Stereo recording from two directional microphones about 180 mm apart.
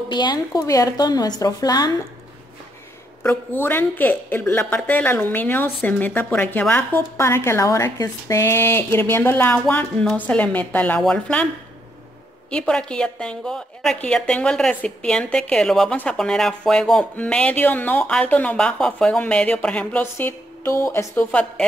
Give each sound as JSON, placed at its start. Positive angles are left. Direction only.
{"t": 0.1, "sound": "speech", "side_deg": 25}
{"t": 3.2, "sound": "a woman's voice", "side_deg": 10}
{"t": 12.4, "sound": "a woman's voice", "side_deg": 5}